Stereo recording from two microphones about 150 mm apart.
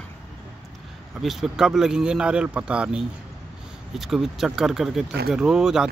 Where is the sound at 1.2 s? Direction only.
Centre (ahead or behind).